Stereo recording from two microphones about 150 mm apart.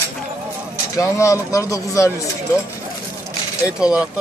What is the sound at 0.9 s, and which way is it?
Speech, 20° left (ahead or behind).